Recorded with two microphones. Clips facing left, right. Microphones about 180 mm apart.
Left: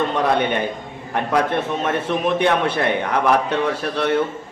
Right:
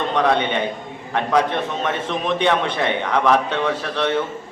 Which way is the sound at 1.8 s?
10° left (ahead or behind).